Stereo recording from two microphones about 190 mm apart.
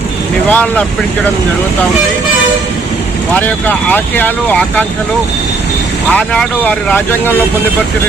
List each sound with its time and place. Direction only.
0.4 s speech: 5° left (ahead or behind)
3.3 s speech: 10° left (ahead or behind)
6.1 s speech: 5° left (ahead or behind)